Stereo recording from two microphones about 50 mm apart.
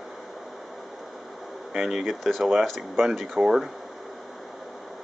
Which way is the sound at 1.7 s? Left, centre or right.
Centre.